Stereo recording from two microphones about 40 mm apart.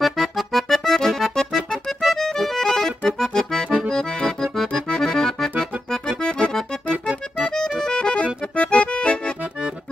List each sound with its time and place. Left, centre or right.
0.0 s music: centre
1.9 s accordion: centre
6.9 s accordion: right
7.8 s accordion: left